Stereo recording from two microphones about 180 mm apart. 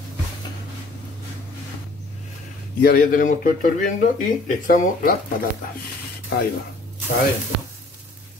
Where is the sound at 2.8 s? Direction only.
55° left (ahead or behind).